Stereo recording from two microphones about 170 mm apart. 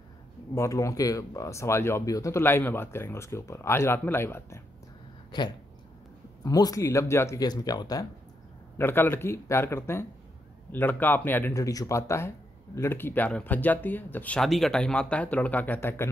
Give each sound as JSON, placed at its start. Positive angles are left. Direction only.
{"t": 0.6, "sound": "speech", "side_deg": 20}
{"t": 5.3, "sound": "speech", "side_deg": 25}